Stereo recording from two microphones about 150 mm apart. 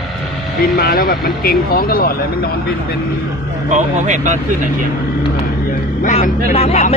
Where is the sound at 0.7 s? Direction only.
85° left.